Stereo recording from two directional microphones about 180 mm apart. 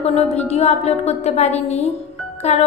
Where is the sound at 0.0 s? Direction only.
35° left (ahead or behind).